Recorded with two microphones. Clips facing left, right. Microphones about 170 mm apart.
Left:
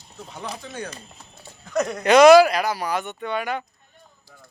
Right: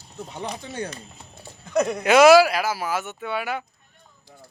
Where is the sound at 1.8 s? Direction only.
5° right (ahead or behind).